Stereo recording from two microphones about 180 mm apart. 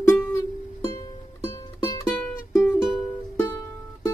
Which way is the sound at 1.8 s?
20° left (ahead or behind).